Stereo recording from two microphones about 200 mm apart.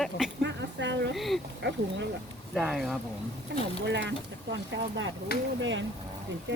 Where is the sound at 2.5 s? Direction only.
Centre (ahead or behind).